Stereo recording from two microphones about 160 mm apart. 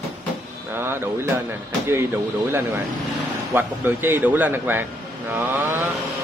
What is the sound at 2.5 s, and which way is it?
Speech, 15° right (ahead or behind).